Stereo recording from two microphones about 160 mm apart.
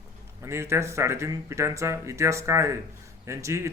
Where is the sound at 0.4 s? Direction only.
15° right (ahead or behind).